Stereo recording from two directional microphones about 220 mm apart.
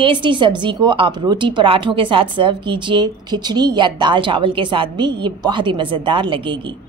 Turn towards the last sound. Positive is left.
turn(degrees=-20)  # may be behind; listen again after turning